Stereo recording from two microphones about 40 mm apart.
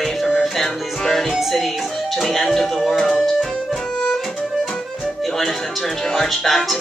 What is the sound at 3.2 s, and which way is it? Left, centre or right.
Music, centre.